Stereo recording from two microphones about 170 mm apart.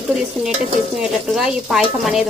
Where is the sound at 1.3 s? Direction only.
Centre (ahead or behind).